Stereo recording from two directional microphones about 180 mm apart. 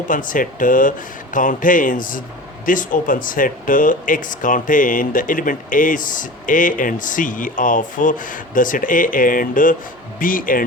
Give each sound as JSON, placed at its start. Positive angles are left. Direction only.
{"t": 0.1, "sound": "speech", "side_deg": 45}